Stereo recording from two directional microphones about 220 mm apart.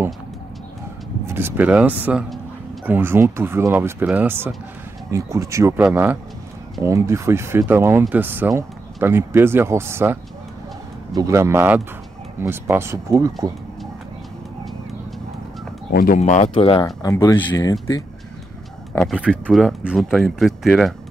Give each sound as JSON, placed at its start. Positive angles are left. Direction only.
{"t": 1.2, "sound": "speech", "side_deg": -10}
{"t": 11.1, "sound": "speech", "side_deg": -15}
{"t": 15.9, "sound": "speech", "side_deg": 40}
{"t": 18.9, "sound": "speech", "side_deg": -5}